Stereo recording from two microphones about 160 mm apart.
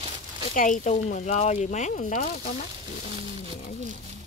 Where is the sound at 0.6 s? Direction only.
55° left (ahead or behind).